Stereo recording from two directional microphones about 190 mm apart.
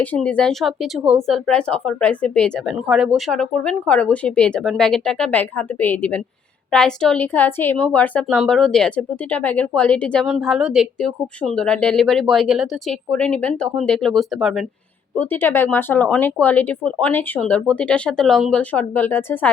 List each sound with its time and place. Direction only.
0.0 s speech: 5° left (ahead or behind)
15.2 s speech: 10° left (ahead or behind)